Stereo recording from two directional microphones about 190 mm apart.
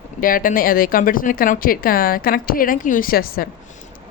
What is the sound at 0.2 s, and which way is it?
A woman's voice, 45° left (ahead or behind).